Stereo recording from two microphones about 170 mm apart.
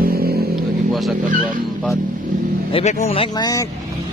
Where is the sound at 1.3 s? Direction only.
55° right (ahead or behind).